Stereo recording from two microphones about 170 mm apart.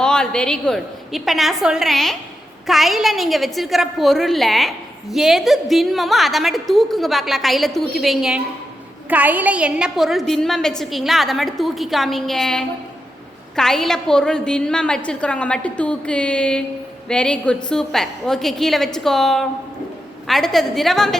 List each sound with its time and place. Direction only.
0.0 s a woman's voice: 5° left (ahead or behind)